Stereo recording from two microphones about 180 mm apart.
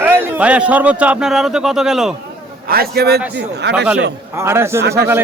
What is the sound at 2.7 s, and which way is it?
Speech, 60° right (ahead or behind).